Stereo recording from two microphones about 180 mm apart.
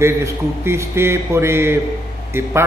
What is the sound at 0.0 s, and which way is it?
A man's voice, 15° right (ahead or behind).